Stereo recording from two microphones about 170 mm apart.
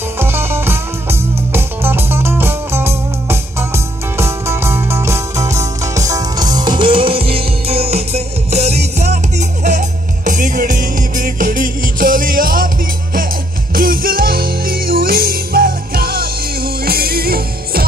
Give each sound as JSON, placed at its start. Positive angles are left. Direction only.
{"t": 0.2, "sound": "music", "side_deg": -15}
{"t": 13.7, "sound": "music", "side_deg": -60}